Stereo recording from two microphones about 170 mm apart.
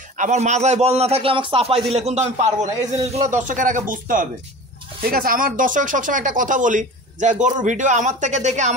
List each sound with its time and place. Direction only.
0.2 s a man's voice: 45° right (ahead or behind)